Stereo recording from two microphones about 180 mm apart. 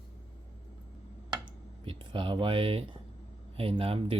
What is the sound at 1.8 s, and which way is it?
Speech, 30° right (ahead or behind).